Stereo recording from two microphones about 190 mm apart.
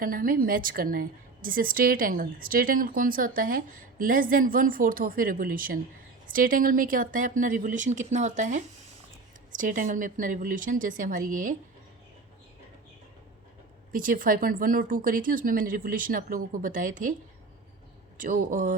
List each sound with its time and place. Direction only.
0.0 s a woman's voice: 50° right (ahead or behind)
13.9 s a woman's voice: 45° right (ahead or behind)
18.2 s a woman's voice: 45° right (ahead or behind)